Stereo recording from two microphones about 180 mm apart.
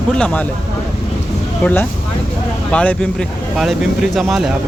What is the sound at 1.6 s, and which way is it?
Speech, 10° left (ahead or behind).